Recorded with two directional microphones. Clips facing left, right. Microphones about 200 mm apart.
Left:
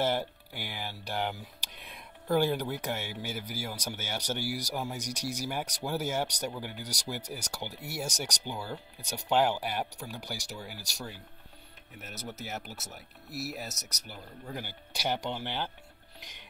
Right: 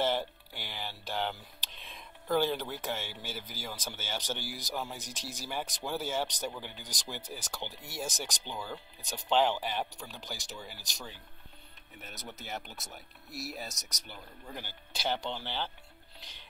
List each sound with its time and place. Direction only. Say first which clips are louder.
0.0 s speech: left 1 dB; 10° left (ahead or behind)